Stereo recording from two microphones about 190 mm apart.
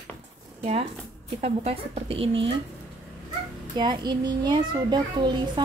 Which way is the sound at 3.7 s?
25° right (ahead or behind).